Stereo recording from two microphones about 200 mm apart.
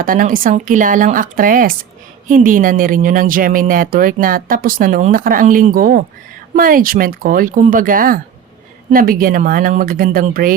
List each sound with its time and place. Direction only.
0.0 s speech: 45° right (ahead or behind)